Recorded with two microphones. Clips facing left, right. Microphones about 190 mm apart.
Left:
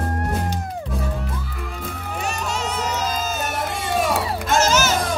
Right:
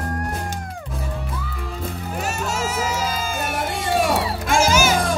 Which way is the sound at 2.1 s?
5° right (ahead or behind).